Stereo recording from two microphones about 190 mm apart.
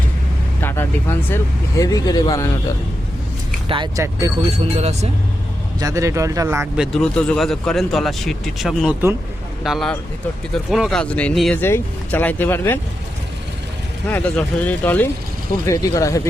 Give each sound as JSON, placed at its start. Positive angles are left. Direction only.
{"t": 0.6, "sound": "speech", "side_deg": 10}
{"t": 3.7, "sound": "speech", "side_deg": -25}
{"t": 4.5, "sound": "speech", "side_deg": -35}
{"t": 5.8, "sound": "speech", "side_deg": -15}
{"t": 6.7, "sound": "speech", "side_deg": 0}
{"t": 14.1, "sound": "speech", "side_deg": 10}